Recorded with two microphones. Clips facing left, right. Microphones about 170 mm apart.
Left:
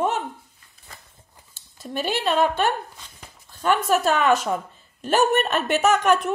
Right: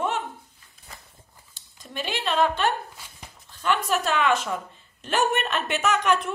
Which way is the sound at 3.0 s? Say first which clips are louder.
Even; 10° right (ahead or behind).